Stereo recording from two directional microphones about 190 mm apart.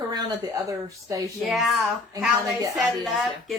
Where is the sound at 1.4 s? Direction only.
Centre (ahead or behind).